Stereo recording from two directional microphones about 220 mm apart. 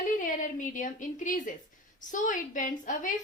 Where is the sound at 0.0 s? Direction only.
35° left (ahead or behind).